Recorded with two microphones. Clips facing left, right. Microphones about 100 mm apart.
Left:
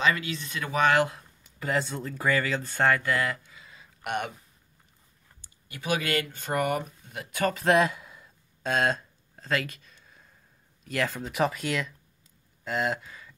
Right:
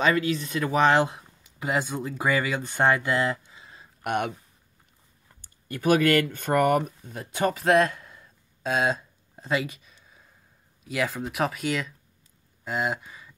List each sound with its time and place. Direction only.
0.0 s speech: 35° right (ahead or behind)
4.0 s speech: 50° right (ahead or behind)
5.4 s speech: 50° right (ahead or behind)
7.2 s speech: 25° right (ahead or behind)
7.5 s a sound: centre (ahead or behind)
10.8 s speech: 5° right (ahead or behind)